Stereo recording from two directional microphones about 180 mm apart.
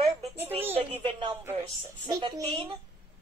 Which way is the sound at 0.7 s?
30° right (ahead or behind).